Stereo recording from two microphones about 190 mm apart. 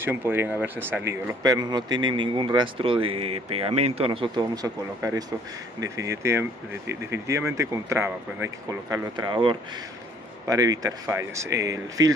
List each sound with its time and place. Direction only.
0.0 s speech: 10° right (ahead or behind)